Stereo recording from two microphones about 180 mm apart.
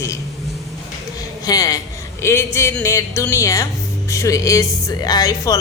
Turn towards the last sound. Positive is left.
turn(degrees=20)  # may be behind; listen again after turning